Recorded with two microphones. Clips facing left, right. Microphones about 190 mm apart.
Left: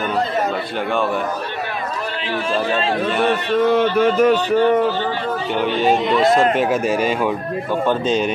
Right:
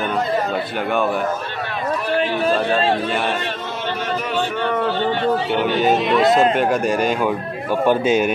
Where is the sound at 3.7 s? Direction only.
55° left (ahead or behind); by 4.6 s 40° left (ahead or behind).